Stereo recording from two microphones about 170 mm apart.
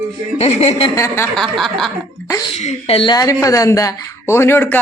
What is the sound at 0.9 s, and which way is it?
Speech, 15° left (ahead or behind).